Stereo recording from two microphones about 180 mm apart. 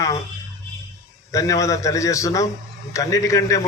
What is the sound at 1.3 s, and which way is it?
Speech, 20° left (ahead or behind).